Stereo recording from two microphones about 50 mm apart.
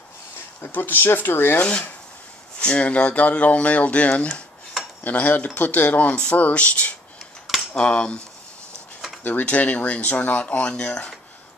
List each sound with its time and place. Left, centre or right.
0.7 s speech: left
1.6 s speech: left
9.2 s speech: left